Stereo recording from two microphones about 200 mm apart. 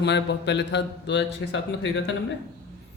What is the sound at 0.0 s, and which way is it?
Speech, 60° left (ahead or behind).